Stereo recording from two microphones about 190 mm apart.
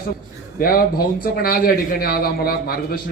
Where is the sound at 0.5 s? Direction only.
50° left (ahead or behind).